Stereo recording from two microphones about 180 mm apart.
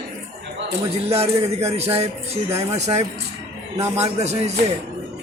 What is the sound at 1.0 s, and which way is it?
Speech, 35° right (ahead or behind).